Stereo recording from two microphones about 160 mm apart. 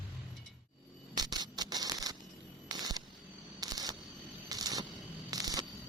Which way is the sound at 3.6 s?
25° right (ahead or behind).